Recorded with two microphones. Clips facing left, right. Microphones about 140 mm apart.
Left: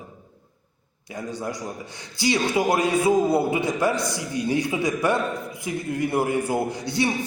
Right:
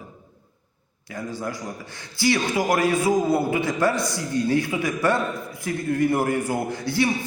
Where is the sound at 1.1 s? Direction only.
20° left (ahead or behind).